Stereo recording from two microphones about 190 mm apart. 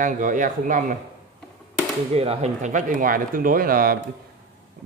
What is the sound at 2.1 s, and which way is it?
A man's voice, 30° right (ahead or behind).